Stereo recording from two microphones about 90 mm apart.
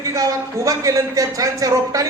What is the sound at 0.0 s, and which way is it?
A man's voice, 40° right (ahead or behind).